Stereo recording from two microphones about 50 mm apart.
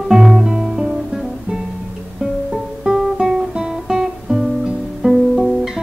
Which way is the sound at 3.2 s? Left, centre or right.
Centre.